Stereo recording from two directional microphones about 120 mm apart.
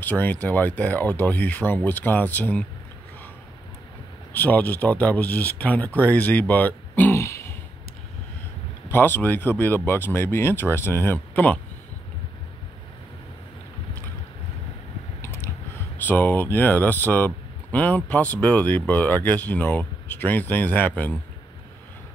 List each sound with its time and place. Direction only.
0.0 s speech: 15° left (ahead or behind)
4.3 s speech: 15° left (ahead or behind)
8.8 s speech: 20° left (ahead or behind)
15.2 s a sound: 20° left (ahead or behind)
16.1 s speech: 15° left (ahead or behind)